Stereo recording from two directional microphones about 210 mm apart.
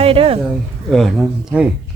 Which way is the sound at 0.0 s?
25° right (ahead or behind).